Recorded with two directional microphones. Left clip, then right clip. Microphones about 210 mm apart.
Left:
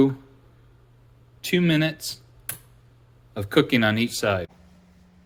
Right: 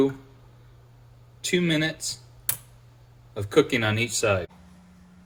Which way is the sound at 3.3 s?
35° left (ahead or behind).